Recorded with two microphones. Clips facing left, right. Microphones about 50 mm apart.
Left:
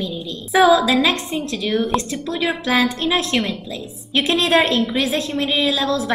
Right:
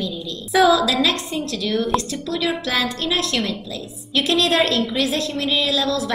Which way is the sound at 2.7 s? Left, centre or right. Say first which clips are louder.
Left 4 dB; left.